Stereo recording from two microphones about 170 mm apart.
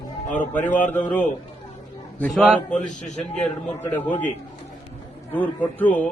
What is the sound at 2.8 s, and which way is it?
Speech, 45° left (ahead or behind).